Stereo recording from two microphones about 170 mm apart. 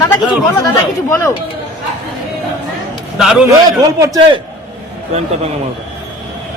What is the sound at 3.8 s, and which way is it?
Speech, 20° right (ahead or behind).